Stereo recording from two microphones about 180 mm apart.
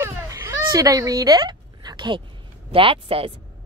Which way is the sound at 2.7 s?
30° right (ahead or behind).